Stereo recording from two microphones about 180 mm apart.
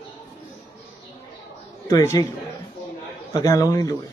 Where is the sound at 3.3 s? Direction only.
20° left (ahead or behind).